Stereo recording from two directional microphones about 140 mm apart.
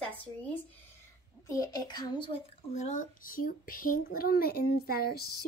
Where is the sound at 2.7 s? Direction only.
60° left (ahead or behind).